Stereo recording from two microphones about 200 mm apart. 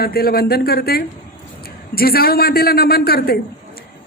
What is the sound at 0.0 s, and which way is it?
A man's voice, 50° left (ahead or behind).